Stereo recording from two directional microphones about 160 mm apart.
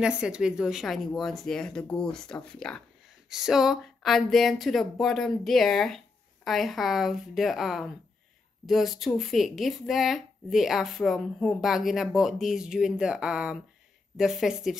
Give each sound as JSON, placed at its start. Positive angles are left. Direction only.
{"t": 0.0, "sound": "speech", "side_deg": -5}